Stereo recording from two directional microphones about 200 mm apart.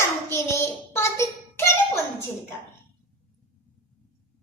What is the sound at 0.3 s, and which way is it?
Child singing, 15° left (ahead or behind).